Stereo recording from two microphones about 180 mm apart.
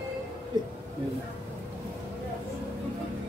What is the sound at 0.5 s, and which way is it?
Speech, 25° right (ahead or behind).